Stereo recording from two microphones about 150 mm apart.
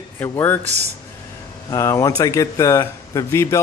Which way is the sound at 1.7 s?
20° left (ahead or behind).